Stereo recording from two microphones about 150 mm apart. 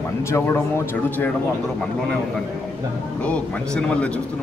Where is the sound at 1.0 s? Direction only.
10° left (ahead or behind).